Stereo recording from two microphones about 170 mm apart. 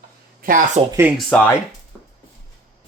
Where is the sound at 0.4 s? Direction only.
55° right (ahead or behind).